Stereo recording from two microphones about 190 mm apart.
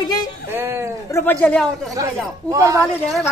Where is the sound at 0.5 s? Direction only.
10° right (ahead or behind).